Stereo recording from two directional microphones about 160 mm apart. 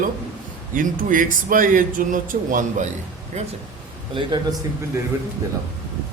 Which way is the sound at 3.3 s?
45° right (ahead or behind).